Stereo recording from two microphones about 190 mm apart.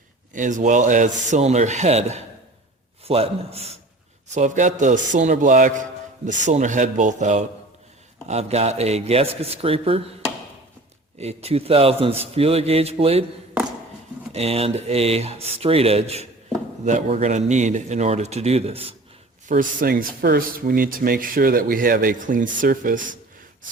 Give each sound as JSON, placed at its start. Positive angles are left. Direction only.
{"t": 0.3, "sound": "a man's voice", "side_deg": -40}
{"t": 11.2, "sound": "a man's voice", "side_deg": -35}
{"t": 14.3, "sound": "a man's voice", "side_deg": -30}
{"t": 19.5, "sound": "speech", "side_deg": -45}